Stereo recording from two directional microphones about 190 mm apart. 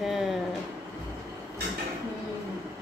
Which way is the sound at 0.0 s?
Centre (ahead or behind).